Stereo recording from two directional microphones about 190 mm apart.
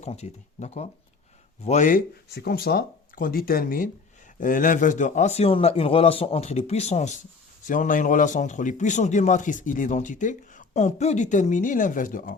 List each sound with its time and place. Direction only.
0.0 s a man's voice: 35° left (ahead or behind)
2.3 s a man's voice: 55° left (ahead or behind)